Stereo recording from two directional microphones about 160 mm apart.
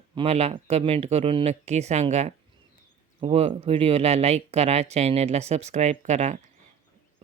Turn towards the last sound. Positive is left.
turn(degrees=-45)  # may be behind; listen again after turning